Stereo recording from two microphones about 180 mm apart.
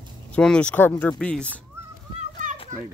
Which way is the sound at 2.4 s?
45° right (ahead or behind).